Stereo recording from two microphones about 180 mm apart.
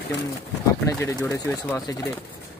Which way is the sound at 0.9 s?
20° left (ahead or behind).